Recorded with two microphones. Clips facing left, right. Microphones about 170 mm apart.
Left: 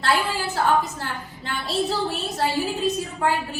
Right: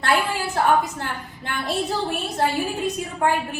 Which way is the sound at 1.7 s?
20° right (ahead or behind).